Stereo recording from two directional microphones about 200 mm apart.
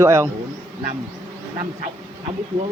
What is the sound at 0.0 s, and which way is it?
Speech, 15° right (ahead or behind).